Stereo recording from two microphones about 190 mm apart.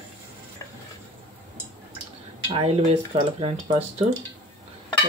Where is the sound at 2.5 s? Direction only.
30° right (ahead or behind).